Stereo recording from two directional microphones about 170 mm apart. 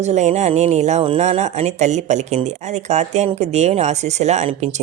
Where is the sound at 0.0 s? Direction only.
45° right (ahead or behind).